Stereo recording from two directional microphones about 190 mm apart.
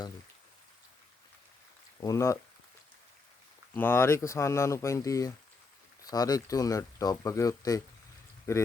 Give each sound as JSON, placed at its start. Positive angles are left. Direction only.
{"t": 2.0, "sound": "speech", "side_deg": 15}
{"t": 3.8, "sound": "speech", "side_deg": 10}